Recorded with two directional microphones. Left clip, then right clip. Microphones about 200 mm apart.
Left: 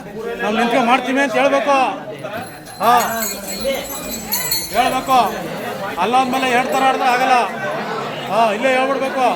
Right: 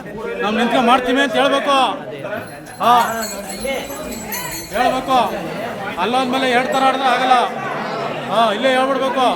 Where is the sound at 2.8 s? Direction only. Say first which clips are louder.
Right 1 dB; 5° left (ahead or behind).